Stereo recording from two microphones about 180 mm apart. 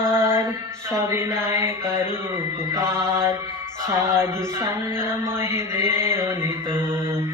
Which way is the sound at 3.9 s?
15° right (ahead or behind).